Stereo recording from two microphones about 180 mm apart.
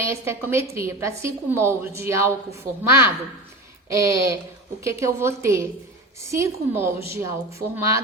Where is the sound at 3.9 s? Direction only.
15° right (ahead or behind).